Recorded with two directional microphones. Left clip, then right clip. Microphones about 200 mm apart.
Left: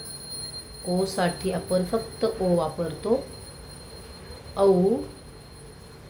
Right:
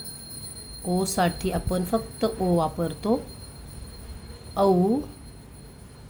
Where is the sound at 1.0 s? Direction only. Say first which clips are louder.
Right 2 dB; 45° right (ahead or behind).